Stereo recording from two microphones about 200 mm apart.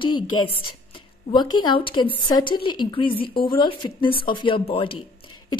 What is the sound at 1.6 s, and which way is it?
A woman's voice, 25° left (ahead or behind).